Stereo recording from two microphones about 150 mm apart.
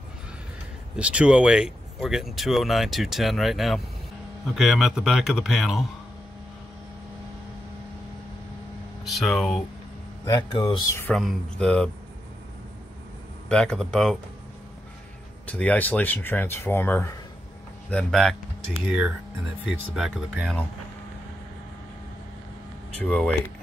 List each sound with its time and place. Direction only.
0.9 s speech: 5° right (ahead or behind)
9.0 s speech: centre (ahead or behind)
10.2 s speech: 25° left (ahead or behind)
11.1 s speech: 5° left (ahead or behind)
13.5 s speech: 5° left (ahead or behind)
15.4 s speech: 10° left (ahead or behind)
18.9 s speech: 5° right (ahead or behind)
22.9 s speech: 5° left (ahead or behind)